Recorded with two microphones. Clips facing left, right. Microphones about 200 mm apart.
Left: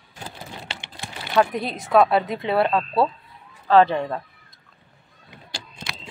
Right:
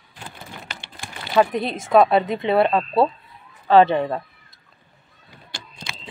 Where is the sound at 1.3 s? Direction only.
Centre (ahead or behind).